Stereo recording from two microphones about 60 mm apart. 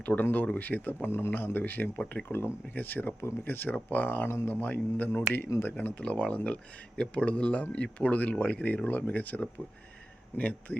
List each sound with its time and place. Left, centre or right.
0.2 s speech: left